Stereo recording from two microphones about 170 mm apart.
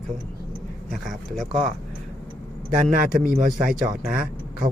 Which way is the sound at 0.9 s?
Centre (ahead or behind).